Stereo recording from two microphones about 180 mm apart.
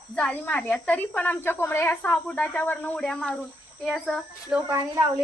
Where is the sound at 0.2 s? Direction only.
5° left (ahead or behind).